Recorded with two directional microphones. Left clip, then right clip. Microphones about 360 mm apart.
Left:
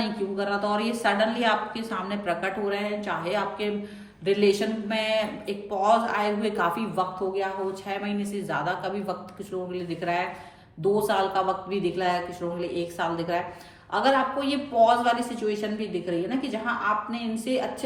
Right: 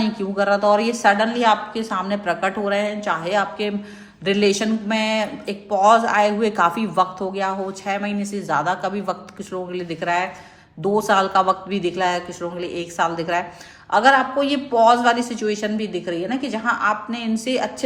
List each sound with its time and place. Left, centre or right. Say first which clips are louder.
0.0 s a man's voice: right 7 dB; centre